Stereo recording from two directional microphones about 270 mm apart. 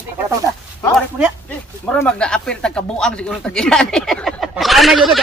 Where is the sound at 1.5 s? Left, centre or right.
Centre.